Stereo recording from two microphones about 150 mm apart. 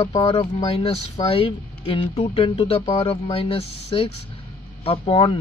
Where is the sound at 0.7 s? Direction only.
40° left (ahead or behind).